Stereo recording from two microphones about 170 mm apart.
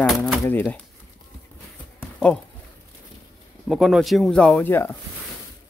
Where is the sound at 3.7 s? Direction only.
Centre (ahead or behind).